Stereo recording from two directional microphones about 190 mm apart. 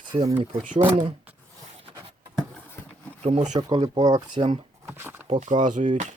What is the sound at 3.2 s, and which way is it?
Speech, 35° right (ahead or behind).